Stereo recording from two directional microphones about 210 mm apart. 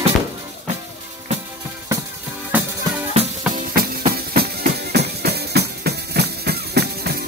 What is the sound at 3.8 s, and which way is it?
Music, 45° right (ahead or behind).